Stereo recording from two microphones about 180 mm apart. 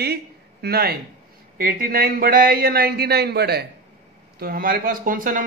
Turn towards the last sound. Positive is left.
turn(degrees=-50)  # may be behind; listen again after turning